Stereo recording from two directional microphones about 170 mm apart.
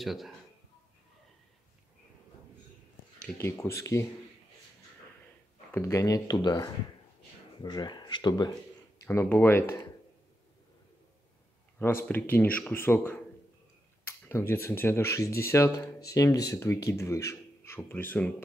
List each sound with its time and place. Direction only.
0.0 s speech: centre (ahead or behind)
3.2 s speech: 15° left (ahead or behind)
5.7 s speech: 15° left (ahead or behind)
11.8 s speech: 15° left (ahead or behind)